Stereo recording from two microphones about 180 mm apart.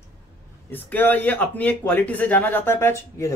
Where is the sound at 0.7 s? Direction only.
10° left (ahead or behind).